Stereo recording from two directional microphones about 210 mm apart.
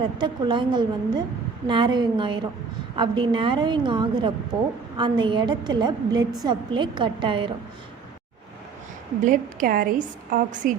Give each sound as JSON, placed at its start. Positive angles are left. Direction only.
{"t": 0.0, "sound": "a woman's voice", "side_deg": -20}
{"t": 9.2, "sound": "a woman's voice", "side_deg": -40}